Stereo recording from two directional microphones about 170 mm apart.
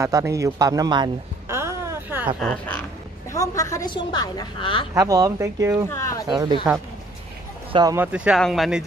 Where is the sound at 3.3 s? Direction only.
20° left (ahead or behind).